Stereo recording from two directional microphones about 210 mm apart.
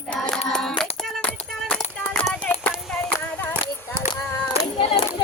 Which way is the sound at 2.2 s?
10° left (ahead or behind).